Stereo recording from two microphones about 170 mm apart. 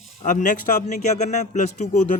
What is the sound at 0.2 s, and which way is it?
Speech, 50° left (ahead or behind).